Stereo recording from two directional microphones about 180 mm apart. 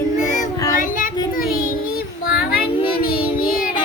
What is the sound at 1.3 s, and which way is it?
Child singing, 55° left (ahead or behind).